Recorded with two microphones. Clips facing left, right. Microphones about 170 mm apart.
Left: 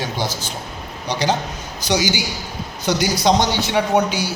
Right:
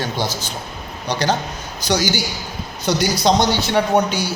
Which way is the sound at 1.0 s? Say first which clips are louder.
Even; 15° left (ahead or behind).